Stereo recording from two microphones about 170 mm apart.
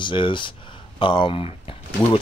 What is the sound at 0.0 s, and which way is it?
Speech, 30° left (ahead or behind).